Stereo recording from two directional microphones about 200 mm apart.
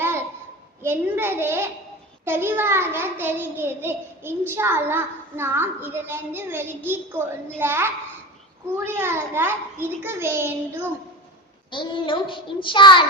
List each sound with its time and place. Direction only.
0.0 s a sound: 10° right (ahead or behind)
0.8 s a child's voice: 10° right (ahead or behind)
11.7 s a child's voice: 25° left (ahead or behind)